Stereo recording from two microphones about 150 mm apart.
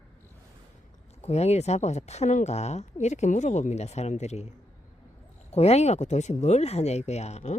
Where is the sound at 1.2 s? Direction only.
45° left (ahead or behind).